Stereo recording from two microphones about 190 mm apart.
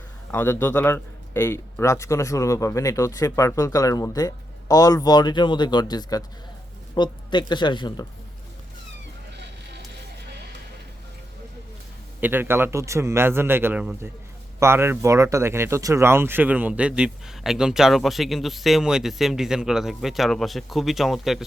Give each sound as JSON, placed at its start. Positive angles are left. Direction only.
{"t": 0.3, "sound": "a man's voice", "side_deg": 10}
{"t": 12.2, "sound": "a man's voice", "side_deg": -10}